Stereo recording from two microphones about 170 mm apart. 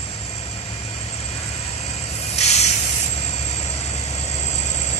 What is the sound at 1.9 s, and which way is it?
Hiss, 40° left (ahead or behind).